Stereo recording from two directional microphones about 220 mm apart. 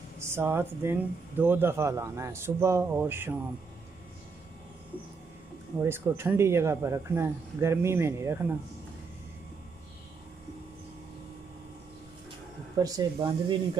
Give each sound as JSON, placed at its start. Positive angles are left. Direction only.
{"t": 0.2, "sound": "speech", "side_deg": -10}
{"t": 5.8, "sound": "speech", "side_deg": -10}
{"t": 12.7, "sound": "speech", "side_deg": -15}